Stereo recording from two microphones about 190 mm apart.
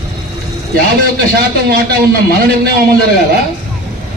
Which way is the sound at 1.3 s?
55° right (ahead or behind).